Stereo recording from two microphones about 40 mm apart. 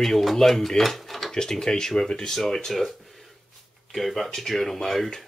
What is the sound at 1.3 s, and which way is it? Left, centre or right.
Speech, centre.